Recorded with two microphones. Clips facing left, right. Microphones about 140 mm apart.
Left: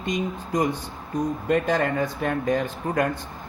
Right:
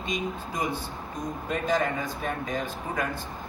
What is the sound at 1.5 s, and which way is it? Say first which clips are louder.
Speech: left 4 dB; 60° left (ahead or behind).